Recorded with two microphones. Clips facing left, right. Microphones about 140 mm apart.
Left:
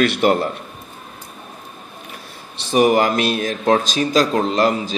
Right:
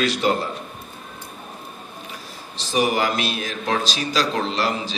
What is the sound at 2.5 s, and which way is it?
A man's voice, 55° left (ahead or behind).